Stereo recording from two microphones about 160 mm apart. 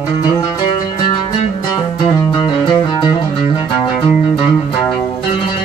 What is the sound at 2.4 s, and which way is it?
Music, 30° left (ahead or behind).